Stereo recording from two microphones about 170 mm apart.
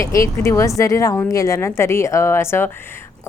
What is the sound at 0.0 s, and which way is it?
A woman's voice, 15° left (ahead or behind).